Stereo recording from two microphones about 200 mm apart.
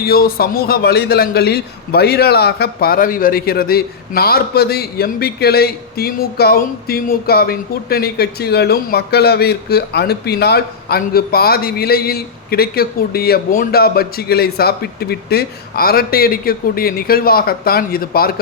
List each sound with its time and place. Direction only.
0.0 s a man's voice: 50° left (ahead or behind)